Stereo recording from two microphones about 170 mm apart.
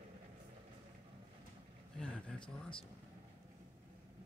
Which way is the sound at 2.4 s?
30° left (ahead or behind).